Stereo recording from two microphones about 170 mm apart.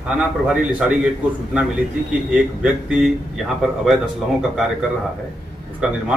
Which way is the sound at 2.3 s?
5° right (ahead or behind).